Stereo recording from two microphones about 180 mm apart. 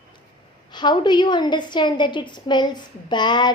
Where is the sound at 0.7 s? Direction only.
25° left (ahead or behind).